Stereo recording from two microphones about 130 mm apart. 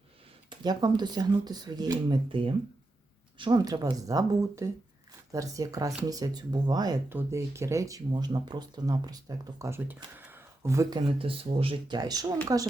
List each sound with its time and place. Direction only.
0.6 s speech: 35° right (ahead or behind)
7.1 s speech: 20° right (ahead or behind)
11.2 s speech: 45° right (ahead or behind)